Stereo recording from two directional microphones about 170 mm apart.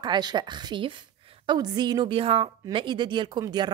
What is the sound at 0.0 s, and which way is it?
A woman's voice, 25° right (ahead or behind).